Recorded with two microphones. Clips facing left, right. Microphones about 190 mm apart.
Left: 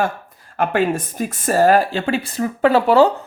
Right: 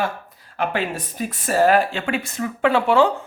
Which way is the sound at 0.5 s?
45° left (ahead or behind).